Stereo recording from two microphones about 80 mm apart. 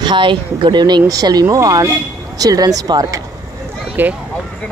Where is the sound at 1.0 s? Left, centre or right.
Right.